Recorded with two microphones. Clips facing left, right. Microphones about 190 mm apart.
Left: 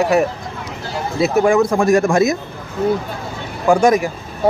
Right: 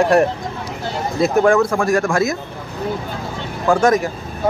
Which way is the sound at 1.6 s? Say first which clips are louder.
Left 3 dB; 20° left (ahead or behind).